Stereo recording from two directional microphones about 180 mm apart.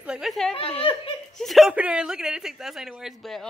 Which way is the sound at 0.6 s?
30° left (ahead or behind).